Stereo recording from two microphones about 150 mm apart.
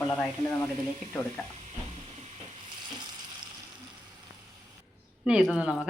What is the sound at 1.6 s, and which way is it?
Stir, 50° right (ahead or behind).